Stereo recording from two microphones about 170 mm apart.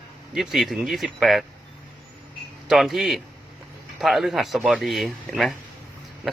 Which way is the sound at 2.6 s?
Centre (ahead or behind).